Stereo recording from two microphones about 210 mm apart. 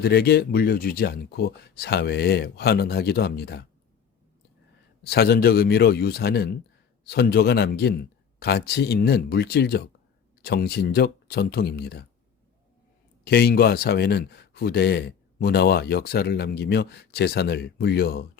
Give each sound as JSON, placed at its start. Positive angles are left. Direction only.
{"t": 0.0, "sound": "speech", "side_deg": 50}
{"t": 5.0, "sound": "speech", "side_deg": 50}
{"t": 13.2, "sound": "speech", "side_deg": 50}